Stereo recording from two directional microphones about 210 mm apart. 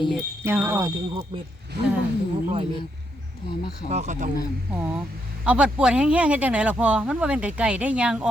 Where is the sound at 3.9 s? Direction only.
35° right (ahead or behind).